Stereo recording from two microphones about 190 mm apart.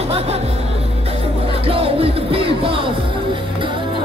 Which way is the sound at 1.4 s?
30° right (ahead or behind).